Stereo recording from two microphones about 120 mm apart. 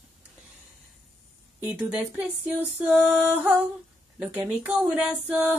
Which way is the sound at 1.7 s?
10° right (ahead or behind).